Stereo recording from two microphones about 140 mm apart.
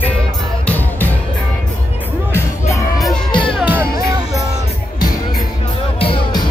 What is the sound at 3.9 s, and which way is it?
Music, 25° right (ahead or behind).